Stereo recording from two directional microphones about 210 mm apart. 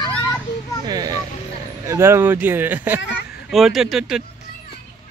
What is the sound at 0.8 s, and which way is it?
Music, 20° right (ahead or behind).